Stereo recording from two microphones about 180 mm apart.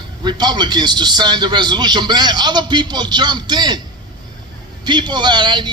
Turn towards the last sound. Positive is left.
turn(degrees=-25)  # may be behind; listen again after turning